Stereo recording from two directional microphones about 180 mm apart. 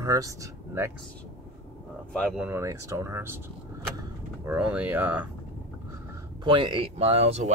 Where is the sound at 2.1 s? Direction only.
Centre (ahead or behind).